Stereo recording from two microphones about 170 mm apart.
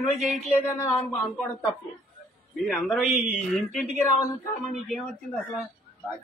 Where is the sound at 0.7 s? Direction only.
15° left (ahead or behind).